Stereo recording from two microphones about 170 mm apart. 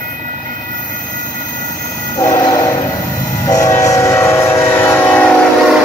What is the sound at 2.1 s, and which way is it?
Train, 15° left (ahead or behind).